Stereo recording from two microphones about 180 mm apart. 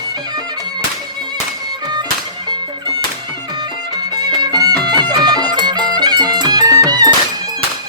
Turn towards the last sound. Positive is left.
turn(degrees=-20)  # may be behind; listen again after turning